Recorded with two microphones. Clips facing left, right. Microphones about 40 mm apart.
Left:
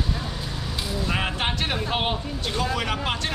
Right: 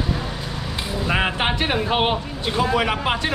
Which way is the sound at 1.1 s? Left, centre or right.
Right.